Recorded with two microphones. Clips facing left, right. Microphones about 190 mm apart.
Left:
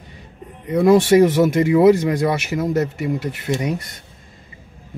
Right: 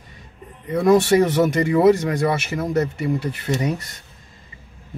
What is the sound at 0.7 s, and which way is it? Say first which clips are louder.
Speech: left 2 dB; 10° left (ahead or behind).